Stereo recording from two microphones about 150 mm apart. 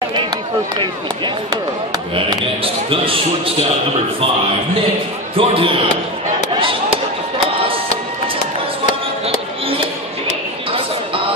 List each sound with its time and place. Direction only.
0.7 s speech: 30° right (ahead or behind)
5.3 s speech: 35° right (ahead or behind)